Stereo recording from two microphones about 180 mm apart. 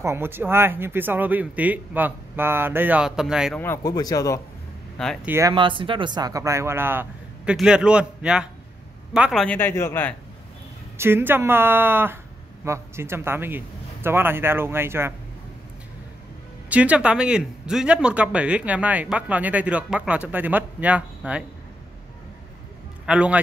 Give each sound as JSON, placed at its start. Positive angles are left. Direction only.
{"t": 0.0, "sound": "speech", "side_deg": -15}
{"t": 3.5, "sound": "speech", "side_deg": 15}
{"t": 4.9, "sound": "speech", "side_deg": 5}
{"t": 5.2, "sound": "speech", "side_deg": -15}
{"t": 5.5, "sound": "a man's voice", "side_deg": -30}
{"t": 11.0, "sound": "speech", "side_deg": -10}
{"t": 16.6, "sound": "speech", "side_deg": -10}
{"t": 23.0, "sound": "speech", "side_deg": -5}